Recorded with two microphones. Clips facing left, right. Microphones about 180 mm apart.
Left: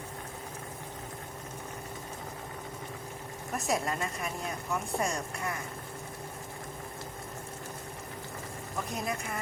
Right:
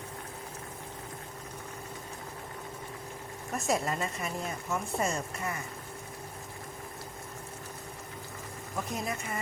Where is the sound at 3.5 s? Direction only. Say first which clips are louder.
Right 1 dB; centre (ahead or behind).